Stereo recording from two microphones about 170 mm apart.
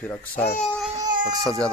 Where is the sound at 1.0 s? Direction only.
25° right (ahead or behind).